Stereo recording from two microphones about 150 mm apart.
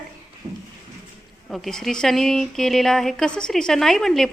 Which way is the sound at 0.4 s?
45° right (ahead or behind).